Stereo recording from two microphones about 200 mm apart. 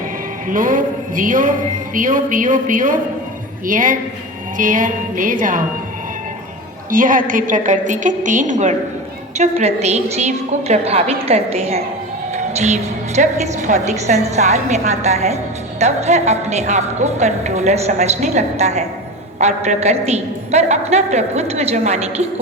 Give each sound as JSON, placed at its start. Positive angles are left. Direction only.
{"t": 0.4, "sound": "a woman's voice", "side_deg": -40}
{"t": 6.9, "sound": "speech", "side_deg": -45}